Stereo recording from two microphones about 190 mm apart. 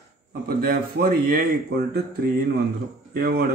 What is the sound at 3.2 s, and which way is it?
Speech, 55° right (ahead or behind).